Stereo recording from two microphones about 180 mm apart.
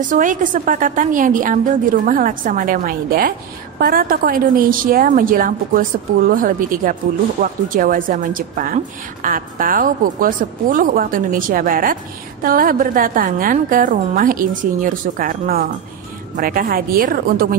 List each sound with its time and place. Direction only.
0.1 s a woman's voice: 45° right (ahead or behind)